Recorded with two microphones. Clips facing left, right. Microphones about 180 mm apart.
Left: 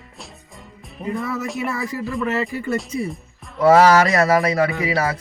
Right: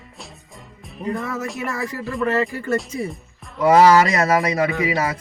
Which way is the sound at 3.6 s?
20° right (ahead or behind).